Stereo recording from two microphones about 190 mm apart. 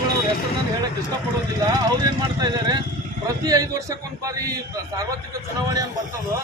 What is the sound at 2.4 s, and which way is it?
A man's voice, 20° right (ahead or behind).